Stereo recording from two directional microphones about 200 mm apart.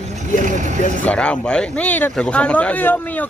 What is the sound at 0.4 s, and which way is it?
Speech, 40° right (ahead or behind).